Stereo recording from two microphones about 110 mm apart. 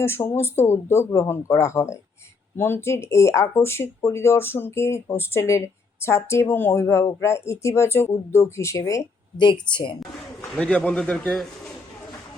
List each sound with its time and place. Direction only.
0.0 s speech: 20° left (ahead or behind)
9.4 s a woman's voice: 45° left (ahead or behind)
10.5 s a man's voice: 10° left (ahead or behind)